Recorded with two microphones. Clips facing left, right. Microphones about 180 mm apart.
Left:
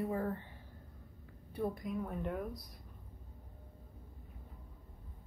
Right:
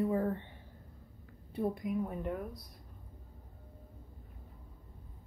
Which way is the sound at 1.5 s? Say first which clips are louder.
Right 4 dB; 15° right (ahead or behind).